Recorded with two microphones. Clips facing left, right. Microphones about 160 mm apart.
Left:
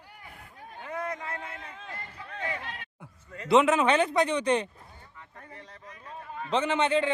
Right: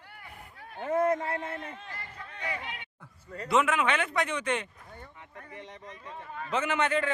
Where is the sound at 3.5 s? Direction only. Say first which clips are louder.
Left 5 dB; 20° left (ahead or behind).